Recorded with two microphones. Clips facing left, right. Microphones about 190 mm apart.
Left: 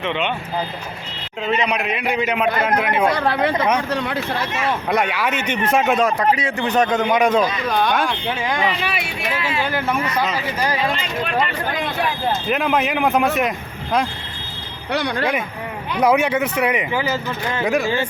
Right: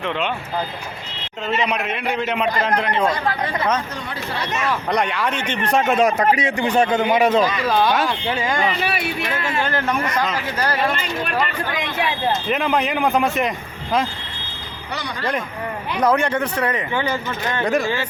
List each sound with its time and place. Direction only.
0.0 s speech: centre (ahead or behind)
1.5 s speech: centre (ahead or behind)
3.1 s speech: 70° left (ahead or behind)
4.9 s speech: 5° left (ahead or behind)
6.4 s speech: 10° right (ahead or behind); by 10.8 s 10° left (ahead or behind)
12.3 s speech: centre (ahead or behind)
14.9 s speech: 60° left (ahead or behind)
16.0 s speech: 10° left (ahead or behind)